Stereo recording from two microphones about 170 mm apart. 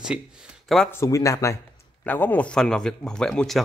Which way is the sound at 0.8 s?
15° left (ahead or behind).